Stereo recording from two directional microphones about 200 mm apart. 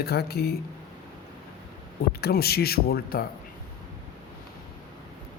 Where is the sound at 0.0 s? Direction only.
50° left (ahead or behind).